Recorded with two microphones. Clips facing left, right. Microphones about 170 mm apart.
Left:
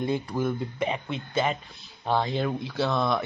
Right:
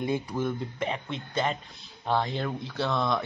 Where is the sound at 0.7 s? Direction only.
15° left (ahead or behind).